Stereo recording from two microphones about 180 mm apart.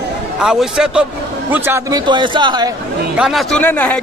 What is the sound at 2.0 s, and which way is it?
Speech, 25° right (ahead or behind).